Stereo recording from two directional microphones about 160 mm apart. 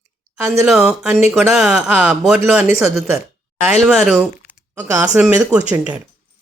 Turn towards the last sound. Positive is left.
turn(degrees=-10)  # may be behind; listen again after turning